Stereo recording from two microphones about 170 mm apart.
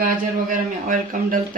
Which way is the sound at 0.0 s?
55° right (ahead or behind).